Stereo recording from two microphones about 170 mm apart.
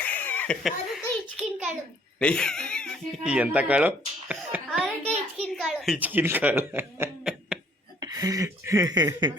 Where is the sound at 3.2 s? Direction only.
5° right (ahead or behind).